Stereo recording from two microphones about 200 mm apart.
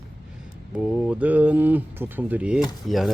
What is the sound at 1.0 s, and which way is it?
Speech, 5° right (ahead or behind).